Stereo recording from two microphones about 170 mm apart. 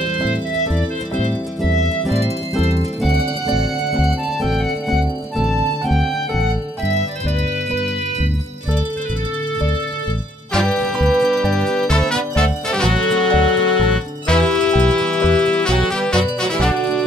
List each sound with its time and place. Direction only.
1.6 s music: centre (ahead or behind)
3.9 s music: centre (ahead or behind)
10.5 s music: 5° left (ahead or behind)
13.3 s music: 30° left (ahead or behind)
14.2 s music: 5° left (ahead or behind)